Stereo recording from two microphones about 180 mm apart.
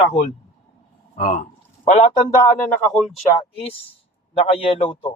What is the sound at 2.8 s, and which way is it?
Speech, centre (ahead or behind).